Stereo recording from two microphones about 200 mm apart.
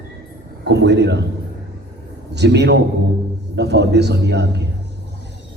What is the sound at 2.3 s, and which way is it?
A man's voice, 60° right (ahead or behind).